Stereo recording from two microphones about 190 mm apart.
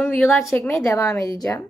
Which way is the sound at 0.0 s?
5° left (ahead or behind).